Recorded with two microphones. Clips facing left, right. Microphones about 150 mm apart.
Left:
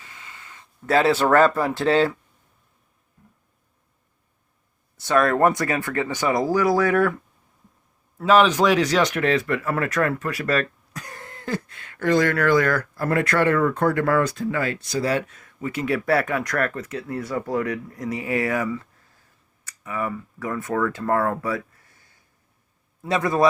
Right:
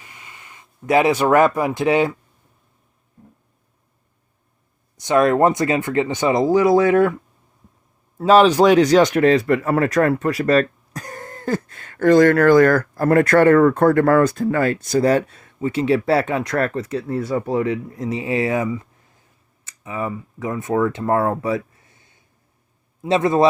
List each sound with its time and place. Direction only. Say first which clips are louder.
0.0 s speech: right 1 dB; 15° right (ahead or behind)
4.9 s speech: right 4 dB; 20° right (ahead or behind)
8.2 s speech: right 5 dB; 35° right (ahead or behind)